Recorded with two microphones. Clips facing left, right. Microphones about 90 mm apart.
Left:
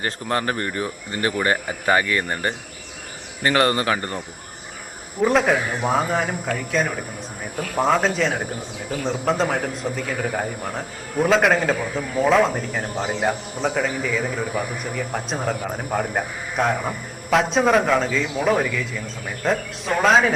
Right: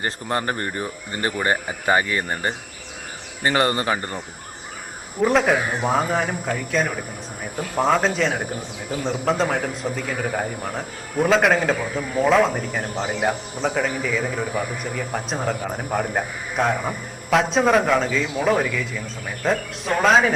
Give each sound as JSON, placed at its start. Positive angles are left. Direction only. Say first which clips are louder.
{"t": 0.0, "sound": "speech", "louder": "left 1 dB", "side_deg": -15}
{"t": 3.7, "sound": "speech", "louder": "left 1 dB", "side_deg": -20}
{"t": 5.2, "sound": "a man's voice", "louder": "even", "side_deg": 0}
{"t": 8.9, "sound": "speech", "louder": "even", "side_deg": -20}
{"t": 9.2, "sound": "a man's voice", "louder": "even", "side_deg": 0}
{"t": 16.7, "sound": "a man's voice", "louder": "even", "side_deg": 15}
{"t": 17.3, "sound": "a man's voice", "louder": "even", "side_deg": 0}